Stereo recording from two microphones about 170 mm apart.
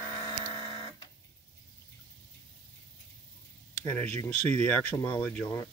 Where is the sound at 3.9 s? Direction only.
10° left (ahead or behind).